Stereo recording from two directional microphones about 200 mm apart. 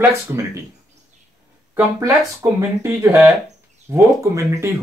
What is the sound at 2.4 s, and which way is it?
Speech, 15° right (ahead or behind).